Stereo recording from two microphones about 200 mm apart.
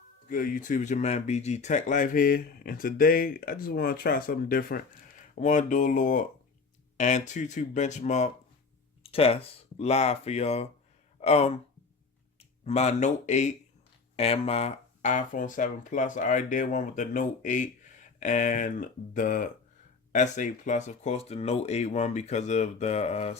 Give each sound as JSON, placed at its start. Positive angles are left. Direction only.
{"t": 0.3, "sound": "speech", "side_deg": 45}